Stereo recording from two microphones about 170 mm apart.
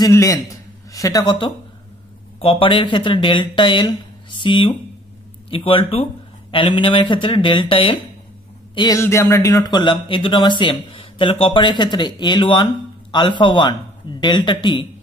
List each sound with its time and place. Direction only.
0.0 s a man's voice: 20° left (ahead or behind)